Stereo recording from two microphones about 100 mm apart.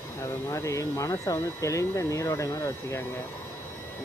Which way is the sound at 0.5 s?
30° left (ahead or behind).